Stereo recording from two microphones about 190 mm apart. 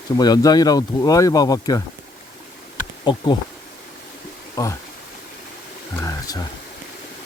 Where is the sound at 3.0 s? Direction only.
25° left (ahead or behind).